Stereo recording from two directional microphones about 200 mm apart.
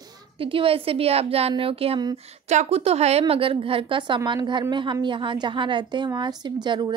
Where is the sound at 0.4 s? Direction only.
25° right (ahead or behind).